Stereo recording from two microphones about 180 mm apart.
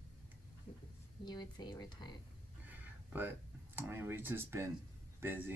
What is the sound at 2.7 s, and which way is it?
Speech, 10° right (ahead or behind).